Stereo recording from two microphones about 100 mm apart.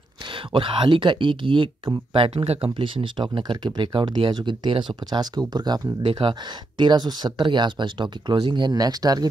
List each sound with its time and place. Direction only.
0.3 s speech: 60° right (ahead or behind)
2.1 s speech: 75° right (ahead or behind); by 9.3 s 40° right (ahead or behind)